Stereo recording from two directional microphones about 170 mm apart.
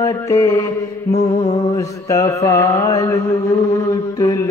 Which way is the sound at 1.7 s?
20° left (ahead or behind).